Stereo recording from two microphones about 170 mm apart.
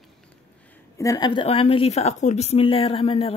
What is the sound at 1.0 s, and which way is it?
A woman's voice, 25° left (ahead or behind).